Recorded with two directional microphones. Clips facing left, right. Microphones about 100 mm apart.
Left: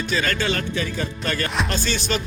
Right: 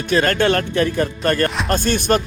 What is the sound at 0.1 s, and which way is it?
Speech, 55° right (ahead or behind).